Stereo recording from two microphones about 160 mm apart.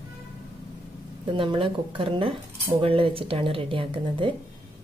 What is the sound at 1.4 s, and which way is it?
Speech, 30° right (ahead or behind).